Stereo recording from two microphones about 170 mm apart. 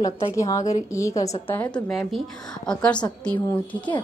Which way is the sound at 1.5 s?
10° left (ahead or behind).